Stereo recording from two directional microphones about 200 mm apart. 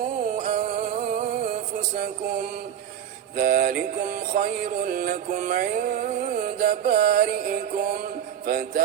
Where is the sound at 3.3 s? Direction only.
45° right (ahead or behind).